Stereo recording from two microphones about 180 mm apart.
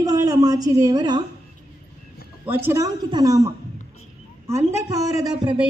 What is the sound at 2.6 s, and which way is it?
A woman's voice, 15° right (ahead or behind).